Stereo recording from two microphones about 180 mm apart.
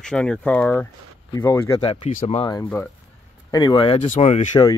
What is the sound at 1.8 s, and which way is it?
Speech, 30° left (ahead or behind).